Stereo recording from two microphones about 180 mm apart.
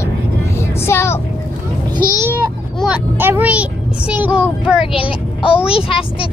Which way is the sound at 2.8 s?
10° right (ahead or behind).